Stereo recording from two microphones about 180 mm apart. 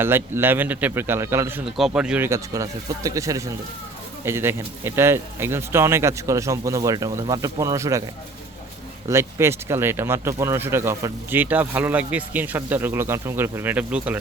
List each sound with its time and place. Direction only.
0.0 s speech: 15° right (ahead or behind)
9.0 s speech: 15° right (ahead or behind)